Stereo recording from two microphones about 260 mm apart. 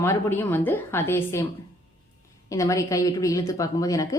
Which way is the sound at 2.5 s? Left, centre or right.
Centre.